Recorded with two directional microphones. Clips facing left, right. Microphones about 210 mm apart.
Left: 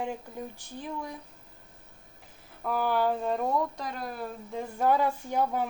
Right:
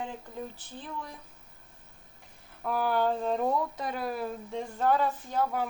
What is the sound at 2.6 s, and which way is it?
Speech, centre (ahead or behind).